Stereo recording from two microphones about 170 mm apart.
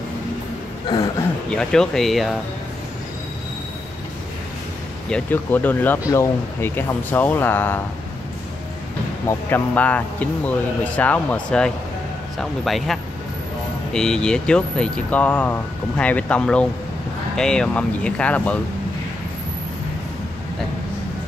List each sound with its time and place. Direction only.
0.8 s a sound: 25° left (ahead or behind)
1.5 s speech: 5° left (ahead or behind)
5.1 s speech: 10° left (ahead or behind)
9.5 s speech: 10° left (ahead or behind)
12.4 s speech: centre (ahead or behind)